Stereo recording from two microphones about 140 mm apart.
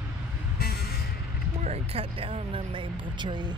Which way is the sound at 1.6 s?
45° right (ahead or behind).